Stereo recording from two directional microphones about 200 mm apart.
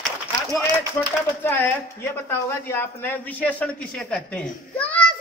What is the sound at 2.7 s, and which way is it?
Speech, 10° left (ahead or behind).